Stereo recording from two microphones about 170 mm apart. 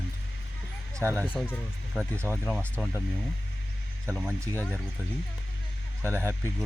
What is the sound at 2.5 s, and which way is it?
Speech, 5° left (ahead or behind).